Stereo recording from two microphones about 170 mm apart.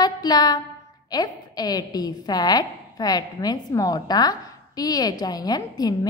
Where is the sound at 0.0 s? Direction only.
25° left (ahead or behind).